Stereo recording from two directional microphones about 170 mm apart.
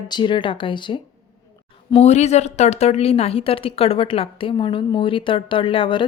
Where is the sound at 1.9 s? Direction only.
40° left (ahead or behind).